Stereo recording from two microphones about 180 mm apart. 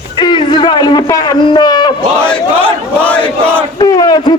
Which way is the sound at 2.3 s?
5° left (ahead or behind).